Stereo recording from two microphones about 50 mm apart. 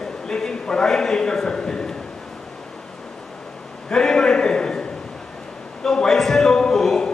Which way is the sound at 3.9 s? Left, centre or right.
Centre.